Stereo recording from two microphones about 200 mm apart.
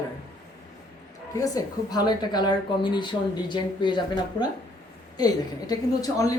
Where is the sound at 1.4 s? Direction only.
20° left (ahead or behind).